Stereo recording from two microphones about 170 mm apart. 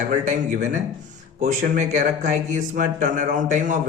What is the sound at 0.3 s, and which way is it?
Speech, 50° right (ahead or behind).